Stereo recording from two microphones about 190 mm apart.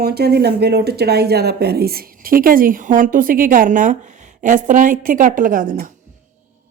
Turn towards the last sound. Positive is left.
turn(degrees=-45)  # may be behind; listen again after turning